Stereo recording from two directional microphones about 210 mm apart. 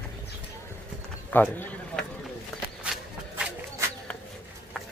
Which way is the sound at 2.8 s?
5° right (ahead or behind).